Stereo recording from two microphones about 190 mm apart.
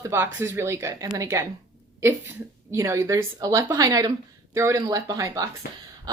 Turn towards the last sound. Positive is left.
turn(degrees=-15)  # may be behind; listen again after turning